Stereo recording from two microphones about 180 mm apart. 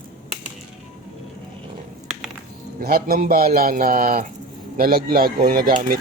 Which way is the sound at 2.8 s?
55° right (ahead or behind).